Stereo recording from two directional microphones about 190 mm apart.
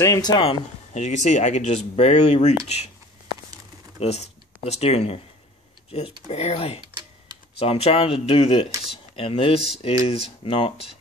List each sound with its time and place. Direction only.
0.0 s speech: 20° left (ahead or behind); by 2.9 s 35° left (ahead or behind)
4.0 s speech: 35° left (ahead or behind)